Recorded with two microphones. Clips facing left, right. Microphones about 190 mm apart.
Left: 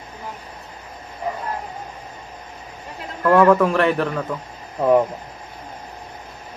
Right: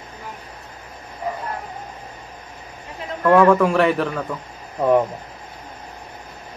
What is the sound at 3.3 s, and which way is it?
Speech, centre (ahead or behind).